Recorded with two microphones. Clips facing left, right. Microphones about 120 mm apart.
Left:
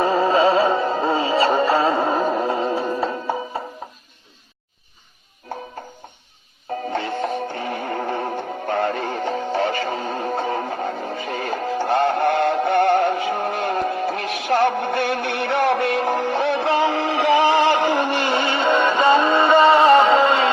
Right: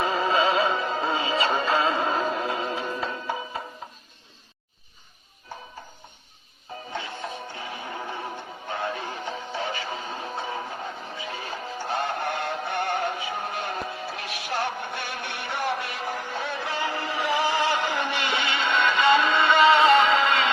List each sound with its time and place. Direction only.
0.0 s music: 35° left (ahead or behind)
2.2 s a sound: 30° left (ahead or behind)
2.9 s music: 30° left (ahead or behind)
6.9 s music: 55° left (ahead or behind)
18.3 s music: 35° left (ahead or behind)